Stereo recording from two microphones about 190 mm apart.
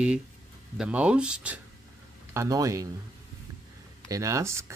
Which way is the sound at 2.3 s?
15° right (ahead or behind).